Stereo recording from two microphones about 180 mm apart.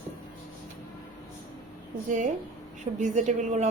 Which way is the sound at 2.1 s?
45° right (ahead or behind).